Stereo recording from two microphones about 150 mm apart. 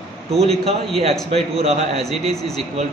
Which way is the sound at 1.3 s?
45° right (ahead or behind).